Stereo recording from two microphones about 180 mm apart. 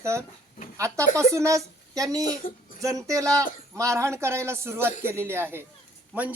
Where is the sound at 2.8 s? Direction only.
15° right (ahead or behind).